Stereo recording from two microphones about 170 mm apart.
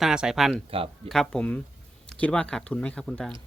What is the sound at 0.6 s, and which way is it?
Speech, 35° right (ahead or behind).